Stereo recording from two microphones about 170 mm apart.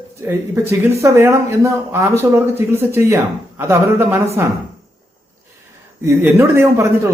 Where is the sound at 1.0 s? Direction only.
15° right (ahead or behind).